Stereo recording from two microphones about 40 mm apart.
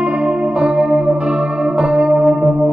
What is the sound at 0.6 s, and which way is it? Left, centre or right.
Music, right.